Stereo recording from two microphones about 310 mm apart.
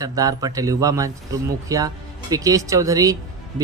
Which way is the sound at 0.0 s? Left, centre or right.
Centre.